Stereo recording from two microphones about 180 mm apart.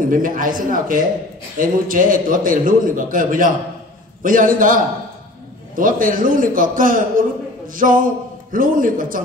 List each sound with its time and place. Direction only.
0.1 s a man's voice: 50° right (ahead or behind)